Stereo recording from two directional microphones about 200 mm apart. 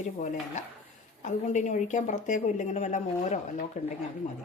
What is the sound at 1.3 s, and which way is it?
Speech, 40° left (ahead or behind).